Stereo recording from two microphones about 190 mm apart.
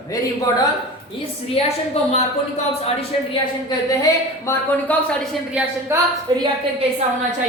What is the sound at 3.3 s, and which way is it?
Speech, 25° left (ahead or behind).